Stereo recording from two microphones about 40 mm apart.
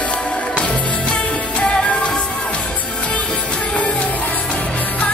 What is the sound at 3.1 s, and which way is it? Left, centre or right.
Music, left.